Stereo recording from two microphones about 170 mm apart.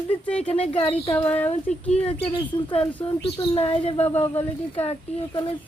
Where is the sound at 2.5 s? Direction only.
30° left (ahead or behind).